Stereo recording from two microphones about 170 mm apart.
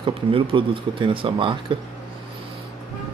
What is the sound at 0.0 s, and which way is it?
Speech, 30° right (ahead or behind).